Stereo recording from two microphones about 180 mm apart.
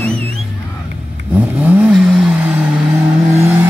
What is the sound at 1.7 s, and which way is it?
Vehicle, 5° right (ahead or behind).